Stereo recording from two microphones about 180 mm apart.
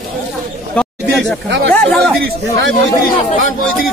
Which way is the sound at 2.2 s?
80° right.